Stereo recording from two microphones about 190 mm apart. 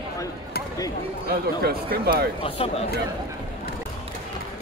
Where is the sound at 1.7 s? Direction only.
55° right (ahead or behind).